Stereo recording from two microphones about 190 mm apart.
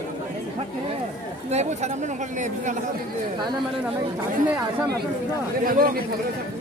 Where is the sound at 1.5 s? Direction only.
35° right (ahead or behind).